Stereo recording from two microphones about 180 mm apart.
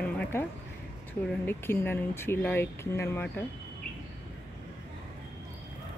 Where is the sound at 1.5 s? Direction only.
10° left (ahead or behind).